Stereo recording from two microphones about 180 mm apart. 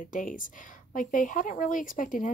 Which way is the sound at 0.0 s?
45° left (ahead or behind).